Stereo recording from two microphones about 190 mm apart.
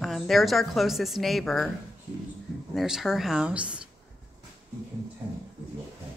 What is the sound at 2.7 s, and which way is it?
A woman's voice, centre (ahead or behind).